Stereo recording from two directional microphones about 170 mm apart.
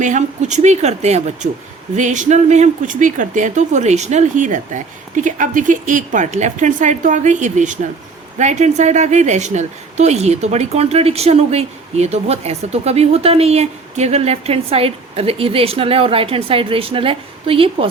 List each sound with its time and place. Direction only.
0.0 s a woman's voice: 45° right (ahead or behind)